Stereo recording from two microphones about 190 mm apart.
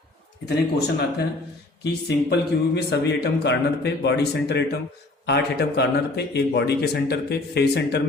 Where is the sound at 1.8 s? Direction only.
60° left (ahead or behind).